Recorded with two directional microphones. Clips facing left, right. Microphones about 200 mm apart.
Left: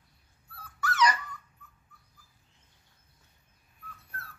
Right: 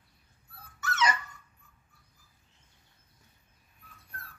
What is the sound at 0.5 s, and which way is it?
Dog, 25° right (ahead or behind).